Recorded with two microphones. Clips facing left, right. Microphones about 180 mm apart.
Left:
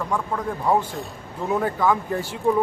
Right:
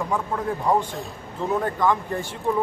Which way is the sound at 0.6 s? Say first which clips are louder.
Left 2 dB; centre (ahead or behind).